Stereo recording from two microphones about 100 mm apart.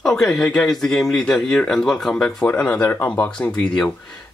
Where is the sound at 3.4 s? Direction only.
5° left (ahead or behind).